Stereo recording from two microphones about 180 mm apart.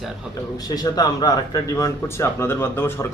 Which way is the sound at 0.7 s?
20° left (ahead or behind).